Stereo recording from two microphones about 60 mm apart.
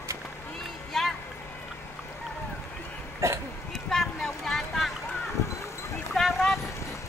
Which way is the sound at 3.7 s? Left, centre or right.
Centre.